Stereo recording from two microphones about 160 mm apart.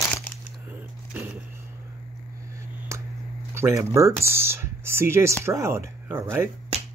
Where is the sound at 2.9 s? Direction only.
15° right (ahead or behind).